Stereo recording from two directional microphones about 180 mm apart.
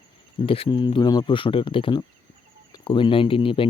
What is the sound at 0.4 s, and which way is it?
Speech, 30° left (ahead or behind).